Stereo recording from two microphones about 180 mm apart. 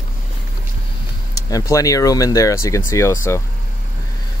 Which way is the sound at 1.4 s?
20° left (ahead or behind).